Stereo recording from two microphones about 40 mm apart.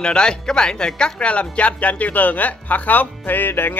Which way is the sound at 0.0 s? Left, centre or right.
Left.